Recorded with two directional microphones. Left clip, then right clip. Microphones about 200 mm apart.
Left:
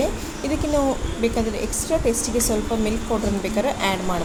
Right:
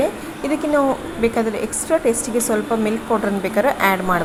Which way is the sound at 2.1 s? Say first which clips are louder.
Right 2 dB; 25° right (ahead or behind).